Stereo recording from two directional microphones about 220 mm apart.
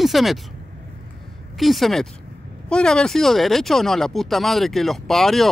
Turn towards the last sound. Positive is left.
turn(degrees=0)  # may be behind; listen again after turning